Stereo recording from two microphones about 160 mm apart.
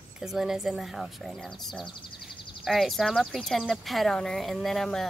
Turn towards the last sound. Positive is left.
turn(degrees=0)  # may be behind; listen again after turning